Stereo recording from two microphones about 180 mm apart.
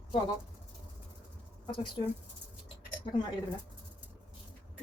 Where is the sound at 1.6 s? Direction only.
30° left (ahead or behind).